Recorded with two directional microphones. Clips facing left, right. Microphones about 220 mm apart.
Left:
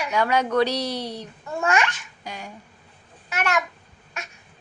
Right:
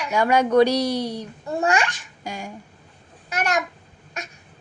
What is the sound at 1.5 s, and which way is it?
Speech, 35° right (ahead or behind).